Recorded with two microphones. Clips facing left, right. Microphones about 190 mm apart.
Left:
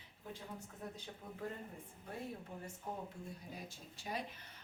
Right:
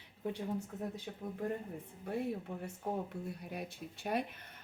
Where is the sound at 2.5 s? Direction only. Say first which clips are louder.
Right 7 dB; 65° right (ahead or behind).